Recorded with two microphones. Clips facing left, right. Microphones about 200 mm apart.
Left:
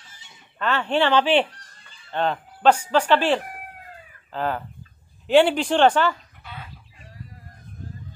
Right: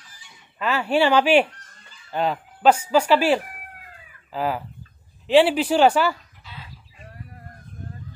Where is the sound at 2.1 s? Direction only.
5° right (ahead or behind).